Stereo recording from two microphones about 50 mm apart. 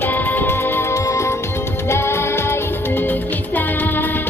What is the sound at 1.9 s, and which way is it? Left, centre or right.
Music, left.